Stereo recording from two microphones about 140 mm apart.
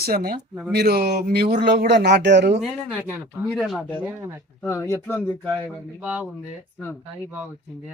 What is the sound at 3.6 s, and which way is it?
Speech, centre (ahead or behind).